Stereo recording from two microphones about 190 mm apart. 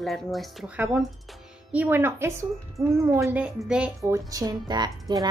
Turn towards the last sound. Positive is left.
turn(degrees=-20)  # may be behind; listen again after turning